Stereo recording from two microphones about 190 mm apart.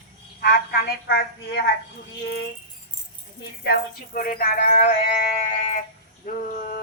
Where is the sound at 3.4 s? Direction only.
55° left (ahead or behind); by 5.8 s 40° left (ahead or behind).